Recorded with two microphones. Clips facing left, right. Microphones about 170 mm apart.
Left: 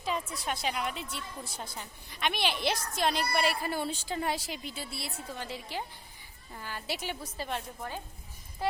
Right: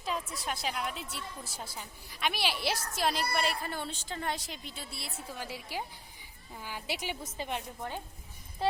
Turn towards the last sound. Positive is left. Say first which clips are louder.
# even
turn(degrees=-15)  # may be behind; listen again after turning